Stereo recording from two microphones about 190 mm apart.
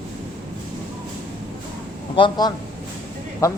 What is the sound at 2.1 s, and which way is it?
Speech, 25° left (ahead or behind).